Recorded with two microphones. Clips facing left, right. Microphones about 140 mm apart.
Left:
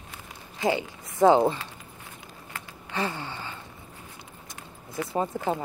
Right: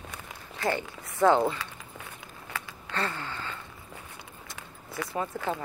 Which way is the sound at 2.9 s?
15° left (ahead or behind).